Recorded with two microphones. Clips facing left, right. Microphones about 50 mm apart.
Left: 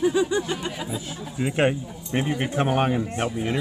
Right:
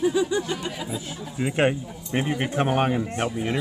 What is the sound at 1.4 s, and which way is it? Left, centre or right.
Speech, centre.